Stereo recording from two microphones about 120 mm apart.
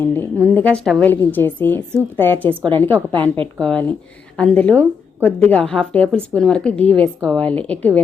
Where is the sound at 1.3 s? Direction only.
15° left (ahead or behind).